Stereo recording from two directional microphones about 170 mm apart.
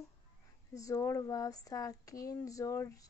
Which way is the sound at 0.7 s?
20° left (ahead or behind).